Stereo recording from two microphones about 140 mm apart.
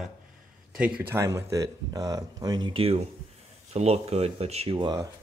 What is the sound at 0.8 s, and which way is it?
Speech, 15° right (ahead or behind).